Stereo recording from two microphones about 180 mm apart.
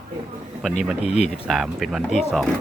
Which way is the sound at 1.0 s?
35° left (ahead or behind).